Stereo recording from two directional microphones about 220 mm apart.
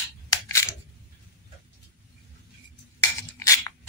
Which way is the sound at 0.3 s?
15° left (ahead or behind).